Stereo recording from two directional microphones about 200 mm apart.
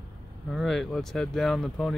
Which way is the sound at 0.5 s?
Centre (ahead or behind).